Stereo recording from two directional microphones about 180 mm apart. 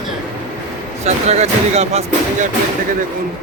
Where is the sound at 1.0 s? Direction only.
35° right (ahead or behind).